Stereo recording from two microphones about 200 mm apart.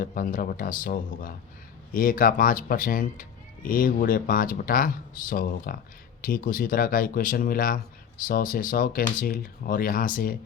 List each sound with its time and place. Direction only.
0.0 s speech: 45° left (ahead or behind)